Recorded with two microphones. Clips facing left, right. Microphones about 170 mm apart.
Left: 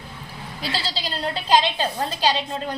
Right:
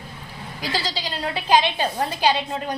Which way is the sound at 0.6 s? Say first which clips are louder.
Right 1 dB; 15° right (ahead or behind).